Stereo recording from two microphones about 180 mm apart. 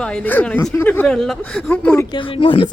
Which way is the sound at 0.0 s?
5° left (ahead or behind).